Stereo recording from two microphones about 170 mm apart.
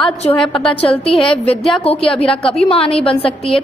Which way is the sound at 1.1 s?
5° left (ahead or behind).